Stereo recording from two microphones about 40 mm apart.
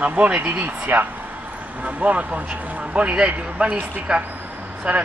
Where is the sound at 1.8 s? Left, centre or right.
Right.